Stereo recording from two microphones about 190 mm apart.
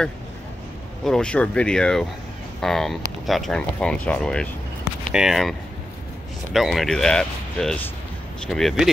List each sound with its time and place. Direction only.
1.0 s speech: 5° left (ahead or behind)